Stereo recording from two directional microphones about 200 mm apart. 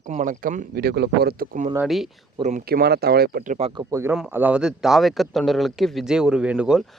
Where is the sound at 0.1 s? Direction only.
40° right (ahead or behind).